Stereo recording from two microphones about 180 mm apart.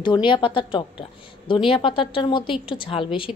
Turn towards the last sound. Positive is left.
turn(degrees=30)  # may be behind; listen again after turning